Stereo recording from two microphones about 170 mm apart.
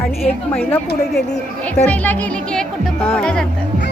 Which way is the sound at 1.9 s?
10° left (ahead or behind).